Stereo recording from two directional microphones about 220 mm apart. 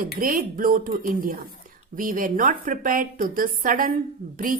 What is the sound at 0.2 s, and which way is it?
A woman's voice, 40° right (ahead or behind).